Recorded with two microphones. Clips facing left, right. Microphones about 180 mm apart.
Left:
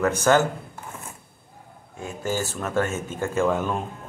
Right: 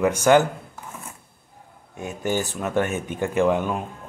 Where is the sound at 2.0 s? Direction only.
20° right (ahead or behind).